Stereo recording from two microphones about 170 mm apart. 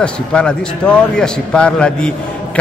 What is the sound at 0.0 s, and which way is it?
A man's voice, 5° left (ahead or behind).